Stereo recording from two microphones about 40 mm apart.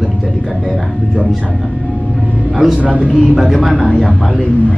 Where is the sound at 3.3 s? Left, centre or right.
Centre.